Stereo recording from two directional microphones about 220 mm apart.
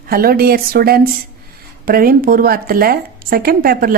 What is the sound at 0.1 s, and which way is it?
Speech, 45° right (ahead or behind).